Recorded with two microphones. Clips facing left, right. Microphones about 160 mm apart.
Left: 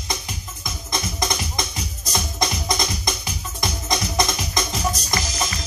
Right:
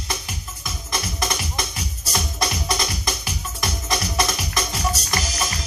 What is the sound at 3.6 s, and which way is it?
Music, 15° left (ahead or behind).